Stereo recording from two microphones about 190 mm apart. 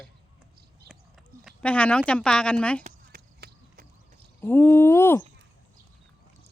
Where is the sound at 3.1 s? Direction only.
50° right (ahead or behind).